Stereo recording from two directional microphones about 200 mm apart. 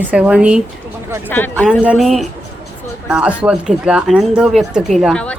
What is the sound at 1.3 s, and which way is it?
Speech, 10° left (ahead or behind).